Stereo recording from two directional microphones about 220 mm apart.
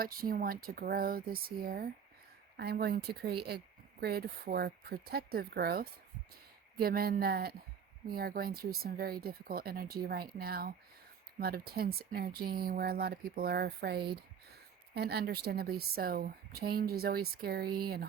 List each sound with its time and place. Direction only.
0.0 s a woman's voice: 40° right (ahead or behind)